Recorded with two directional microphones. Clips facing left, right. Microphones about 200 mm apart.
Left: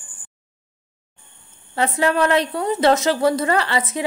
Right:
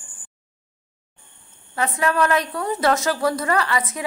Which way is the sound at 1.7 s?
30° left (ahead or behind).